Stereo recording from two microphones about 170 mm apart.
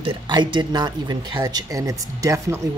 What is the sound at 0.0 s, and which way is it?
Speech, 30° right (ahead or behind).